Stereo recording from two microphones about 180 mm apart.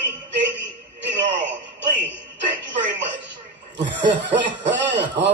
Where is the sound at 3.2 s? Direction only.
80° right.